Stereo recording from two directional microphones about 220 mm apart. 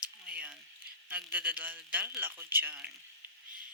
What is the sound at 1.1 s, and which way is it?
Speech, 5° right (ahead or behind).